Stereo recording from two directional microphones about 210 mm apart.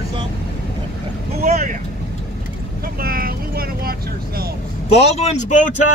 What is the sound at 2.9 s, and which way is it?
Vehicle, 45° right (ahead or behind).